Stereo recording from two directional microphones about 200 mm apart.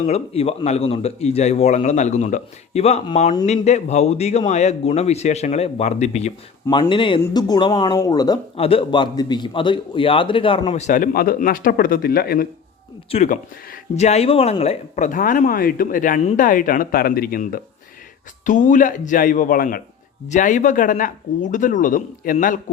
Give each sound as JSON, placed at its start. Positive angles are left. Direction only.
{"t": 0.0, "sound": "speech", "side_deg": 30}
{"t": 13.1, "sound": "speech", "side_deg": 35}